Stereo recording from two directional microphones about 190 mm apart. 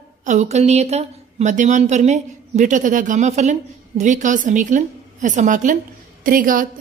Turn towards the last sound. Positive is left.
turn(degrees=-45)  # may be behind; listen again after turning